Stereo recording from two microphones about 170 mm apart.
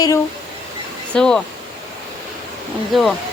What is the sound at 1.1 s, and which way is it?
Speech, 5° left (ahead or behind).